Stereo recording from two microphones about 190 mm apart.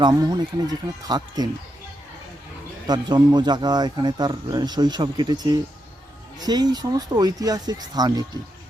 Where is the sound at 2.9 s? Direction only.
20° right (ahead or behind).